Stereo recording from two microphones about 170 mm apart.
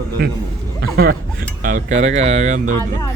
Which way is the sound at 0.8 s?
65° right (ahead or behind).